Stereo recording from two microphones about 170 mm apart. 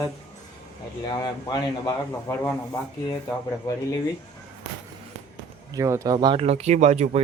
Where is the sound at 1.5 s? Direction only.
20° left (ahead or behind).